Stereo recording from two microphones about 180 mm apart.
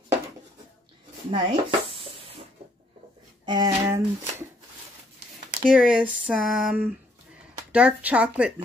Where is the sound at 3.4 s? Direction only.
20° right (ahead or behind).